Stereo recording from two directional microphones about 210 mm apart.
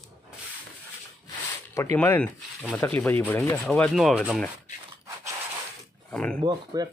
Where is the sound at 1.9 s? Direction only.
10° left (ahead or behind).